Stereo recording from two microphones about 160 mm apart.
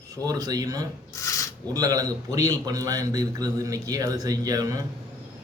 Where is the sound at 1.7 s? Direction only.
25° right (ahead or behind).